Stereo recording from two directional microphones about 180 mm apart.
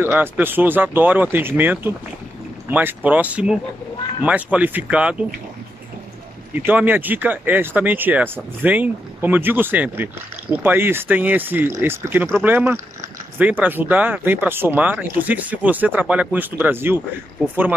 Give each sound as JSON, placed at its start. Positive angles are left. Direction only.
{"t": 0.0, "sound": "speech", "side_deg": -10}
{"t": 6.5, "sound": "speech", "side_deg": -10}